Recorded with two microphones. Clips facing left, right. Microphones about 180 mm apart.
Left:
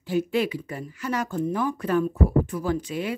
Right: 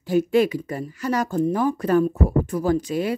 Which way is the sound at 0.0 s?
45° right (ahead or behind).